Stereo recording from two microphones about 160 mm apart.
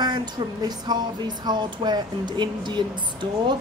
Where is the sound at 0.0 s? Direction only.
25° right (ahead or behind).